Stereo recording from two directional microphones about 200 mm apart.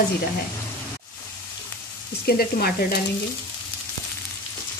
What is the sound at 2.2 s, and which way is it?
Speech, 50° left (ahead or behind).